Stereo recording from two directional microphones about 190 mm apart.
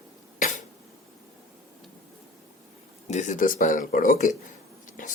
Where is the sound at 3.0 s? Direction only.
40° left (ahead or behind).